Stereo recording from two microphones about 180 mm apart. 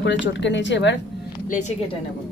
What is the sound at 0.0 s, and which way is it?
Speech, 80° left.